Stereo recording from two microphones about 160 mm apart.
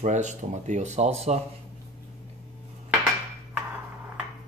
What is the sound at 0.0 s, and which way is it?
Speech, 45° right (ahead or behind).